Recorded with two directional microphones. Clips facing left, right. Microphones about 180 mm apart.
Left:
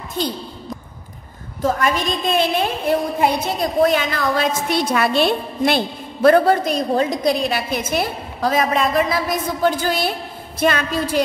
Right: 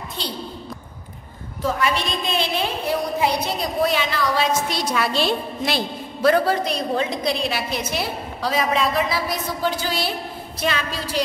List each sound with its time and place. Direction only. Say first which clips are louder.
1.6 s a woman's voice: left 3 dB; 45° left (ahead or behind)